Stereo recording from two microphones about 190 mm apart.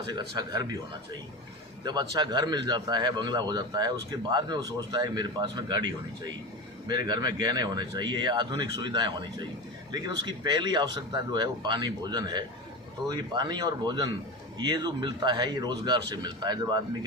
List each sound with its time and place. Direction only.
0.1 s speech: 20° right (ahead or behind)
1.8 s speech: 20° right (ahead or behind)
7.1 s speech: 20° right (ahead or behind)